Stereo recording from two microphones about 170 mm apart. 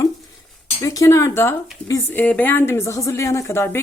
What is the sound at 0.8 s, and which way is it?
Speech, 20° left (ahead or behind).